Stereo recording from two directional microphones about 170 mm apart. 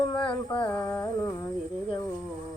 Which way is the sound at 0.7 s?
20° left (ahead or behind).